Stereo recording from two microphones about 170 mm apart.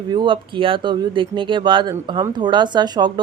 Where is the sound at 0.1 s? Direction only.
25° right (ahead or behind).